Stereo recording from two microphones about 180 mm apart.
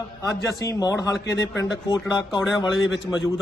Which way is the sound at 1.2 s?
80° left.